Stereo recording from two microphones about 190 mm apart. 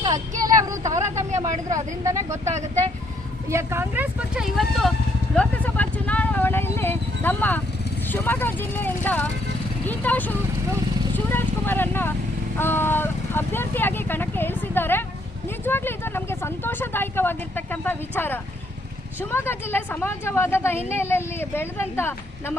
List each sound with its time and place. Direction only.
0.5 s vehicle: 15° right (ahead or behind)
1.0 s vehicle: 35° right (ahead or behind)
1.4 s speech: 15° right (ahead or behind)
3.5 s speech: 15° right (ahead or behind)
5.3 s vehicle: 5° left (ahead or behind)
8.1 s speech: 10° left (ahead or behind)
11.1 s vehicle: 10° left (ahead or behind)
12.5 s speech: 10° left (ahead or behind)